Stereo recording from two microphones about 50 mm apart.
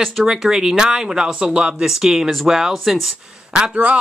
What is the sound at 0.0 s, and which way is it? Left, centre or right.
Speech, centre.